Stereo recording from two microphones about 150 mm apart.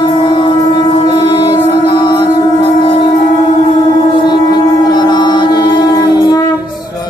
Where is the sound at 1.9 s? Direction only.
30° left (ahead or behind).